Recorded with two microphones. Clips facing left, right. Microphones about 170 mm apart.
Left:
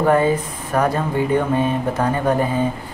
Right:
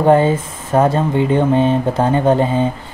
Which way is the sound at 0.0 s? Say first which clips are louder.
Right 4 dB; 25° right (ahead or behind).